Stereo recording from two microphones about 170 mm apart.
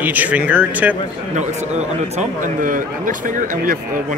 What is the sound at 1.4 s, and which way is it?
Speech, 45° right (ahead or behind).